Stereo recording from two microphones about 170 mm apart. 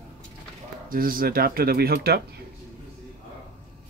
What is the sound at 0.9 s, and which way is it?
Speech, 55° right (ahead or behind).